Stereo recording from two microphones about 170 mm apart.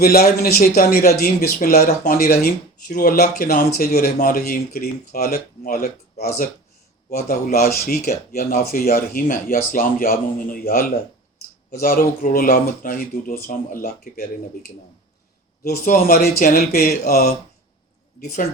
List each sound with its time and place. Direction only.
0.0 s speech: 60° left (ahead or behind)
15.6 s speech: 60° left (ahead or behind)